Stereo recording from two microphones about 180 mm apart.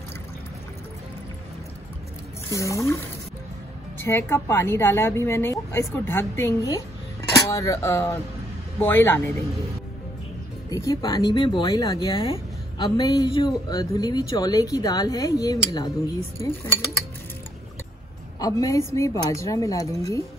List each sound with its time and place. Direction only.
2.5 s a woman's voice: 15° left (ahead or behind)
10.7 s speech: 20° left (ahead or behind)
18.4 s a woman's voice: 20° left (ahead or behind)